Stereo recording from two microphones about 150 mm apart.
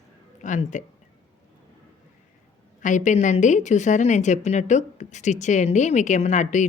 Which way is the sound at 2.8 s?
55° left (ahead or behind).